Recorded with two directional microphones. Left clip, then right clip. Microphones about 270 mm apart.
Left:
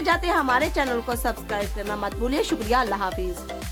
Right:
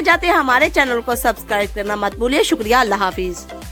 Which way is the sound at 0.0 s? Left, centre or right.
Right.